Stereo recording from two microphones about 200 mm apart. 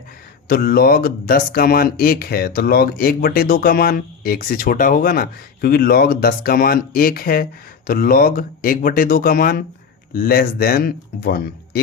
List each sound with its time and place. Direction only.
0.4 s speech: 50° left (ahead or behind)